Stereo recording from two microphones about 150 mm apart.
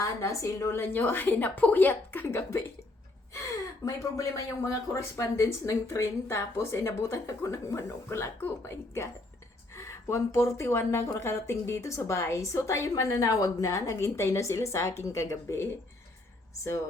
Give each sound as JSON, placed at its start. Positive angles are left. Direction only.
{"t": 0.0, "sound": "a woman's voice", "side_deg": 20}
{"t": 3.8, "sound": "speech", "side_deg": 20}